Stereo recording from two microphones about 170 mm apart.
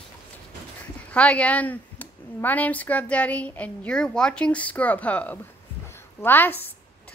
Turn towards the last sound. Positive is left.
turn(degrees=10)  # may be behind; listen again after turning